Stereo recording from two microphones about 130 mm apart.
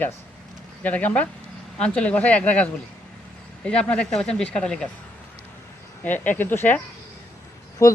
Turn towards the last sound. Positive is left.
turn(degrees=25)  # may be behind; listen again after turning